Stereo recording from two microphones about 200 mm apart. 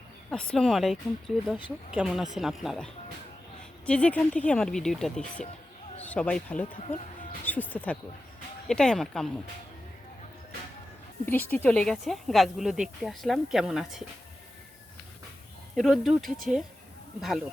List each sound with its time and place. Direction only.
0.3 s speech: 5° left (ahead or behind)
1.5 s speech: 25° left (ahead or behind)
2.0 s a man's voice: centre (ahead or behind)
11.3 s speech: 10° left (ahead or behind)
15.7 s speech: centre (ahead or behind)